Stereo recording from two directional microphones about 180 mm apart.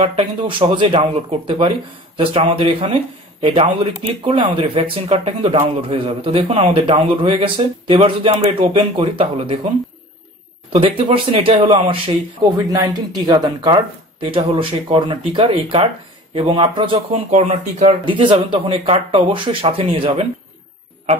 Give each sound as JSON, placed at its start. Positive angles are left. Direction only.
{"t": 0.0, "sound": "speech", "side_deg": -30}
{"t": 10.7, "sound": "speech", "side_deg": -30}
{"t": 12.6, "sound": "speech", "side_deg": -20}